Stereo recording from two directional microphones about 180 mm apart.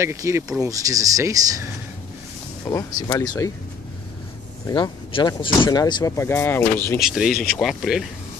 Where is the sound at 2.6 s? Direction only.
20° left (ahead or behind).